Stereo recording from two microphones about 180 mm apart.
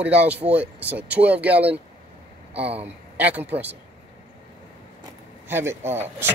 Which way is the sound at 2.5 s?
35° right (ahead or behind).